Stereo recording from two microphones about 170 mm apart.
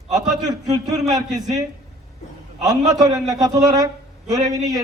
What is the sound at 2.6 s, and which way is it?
Speech, 20° right (ahead or behind).